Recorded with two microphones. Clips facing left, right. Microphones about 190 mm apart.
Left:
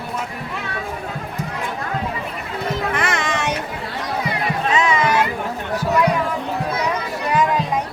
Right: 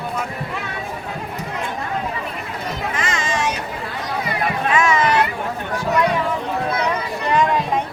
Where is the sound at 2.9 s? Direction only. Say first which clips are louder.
Left 1 dB; 60° left (ahead or behind).